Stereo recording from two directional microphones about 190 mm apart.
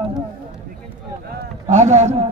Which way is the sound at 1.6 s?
35° right (ahead or behind).